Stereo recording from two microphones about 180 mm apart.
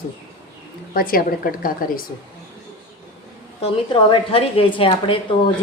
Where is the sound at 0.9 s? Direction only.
55° left (ahead or behind).